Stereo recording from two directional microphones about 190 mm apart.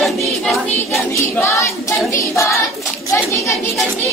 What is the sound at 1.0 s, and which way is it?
Child singing, 15° left (ahead or behind).